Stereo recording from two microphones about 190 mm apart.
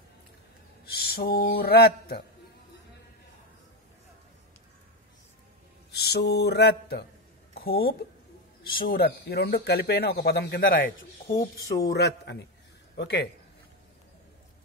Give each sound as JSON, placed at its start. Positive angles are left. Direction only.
{"t": 0.8, "sound": "speech", "side_deg": 55}
{"t": 5.9, "sound": "speech", "side_deg": 60}